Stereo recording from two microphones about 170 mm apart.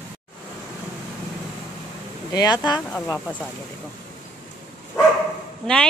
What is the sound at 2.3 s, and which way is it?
Speech, 25° left (ahead or behind).